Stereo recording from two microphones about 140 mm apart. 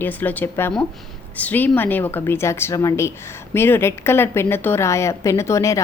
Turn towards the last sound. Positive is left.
turn(degrees=20)  # may be behind; listen again after turning